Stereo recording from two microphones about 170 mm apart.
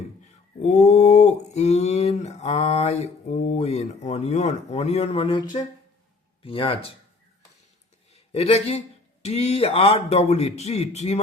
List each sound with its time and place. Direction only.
0.6 s speech: 40° left (ahead or behind)
8.1 s speech: 35° left (ahead or behind)